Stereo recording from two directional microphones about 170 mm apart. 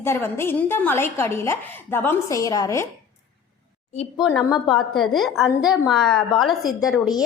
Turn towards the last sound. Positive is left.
turn(degrees=0)  # may be behind; listen again after turning